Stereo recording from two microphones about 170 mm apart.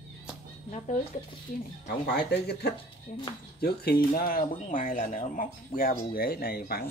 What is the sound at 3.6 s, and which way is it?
A woman's voice, 65° left (ahead or behind).